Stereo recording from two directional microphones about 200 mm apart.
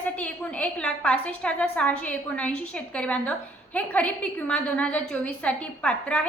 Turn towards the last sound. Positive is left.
turn(degrees=5)  # may be behind; listen again after turning